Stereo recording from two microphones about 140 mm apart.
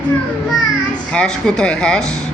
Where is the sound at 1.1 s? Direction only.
5° left (ahead or behind).